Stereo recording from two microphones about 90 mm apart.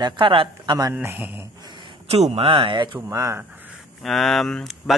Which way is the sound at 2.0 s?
90° right.